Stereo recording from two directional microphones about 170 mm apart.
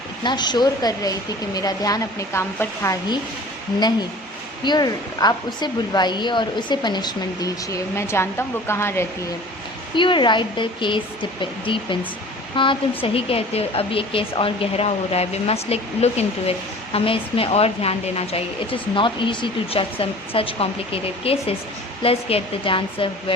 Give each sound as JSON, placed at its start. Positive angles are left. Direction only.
{"t": 0.2, "sound": "a woman's voice", "side_deg": 25}
{"t": 4.6, "sound": "a woman's voice", "side_deg": 25}
{"t": 9.9, "sound": "a woman's voice", "side_deg": 30}